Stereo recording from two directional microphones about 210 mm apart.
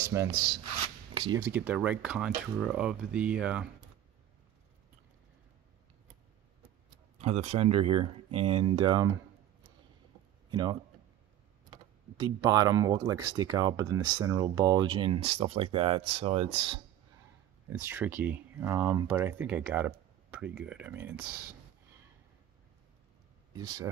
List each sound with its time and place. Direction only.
0.0 s speech: 15° right (ahead or behind)
7.2 s speech: 30° right (ahead or behind)
10.5 s speech: 20° right (ahead or behind)
17.7 s speech: 10° right (ahead or behind)
23.5 s speech: 20° right (ahead or behind)